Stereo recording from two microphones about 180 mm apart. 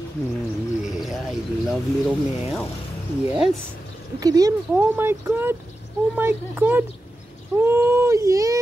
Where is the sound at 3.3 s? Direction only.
5° right (ahead or behind).